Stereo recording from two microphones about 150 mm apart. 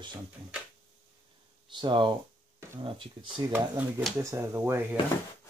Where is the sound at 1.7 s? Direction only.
30° right (ahead or behind).